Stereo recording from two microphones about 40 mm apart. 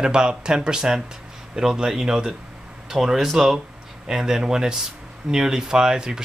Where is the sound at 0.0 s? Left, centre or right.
Right.